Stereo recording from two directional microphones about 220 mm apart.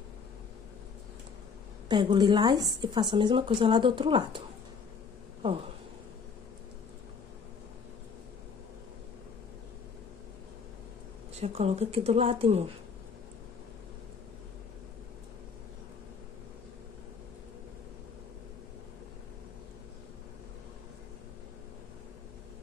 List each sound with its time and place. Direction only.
1.9 s a woman's voice: 20° right (ahead or behind)
11.3 s a woman's voice: 30° right (ahead or behind)